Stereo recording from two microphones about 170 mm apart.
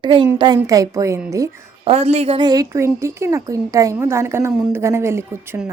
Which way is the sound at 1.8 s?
35° right (ahead or behind).